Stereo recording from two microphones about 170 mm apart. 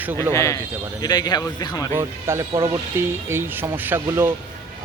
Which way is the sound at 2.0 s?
15° right (ahead or behind).